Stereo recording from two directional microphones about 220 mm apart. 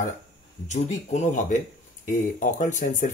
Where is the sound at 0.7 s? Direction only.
30° left (ahead or behind).